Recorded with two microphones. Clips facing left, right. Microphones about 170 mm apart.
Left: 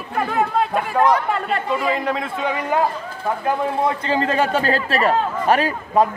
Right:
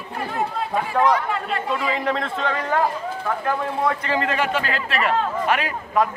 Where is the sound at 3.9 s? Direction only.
30° left (ahead or behind).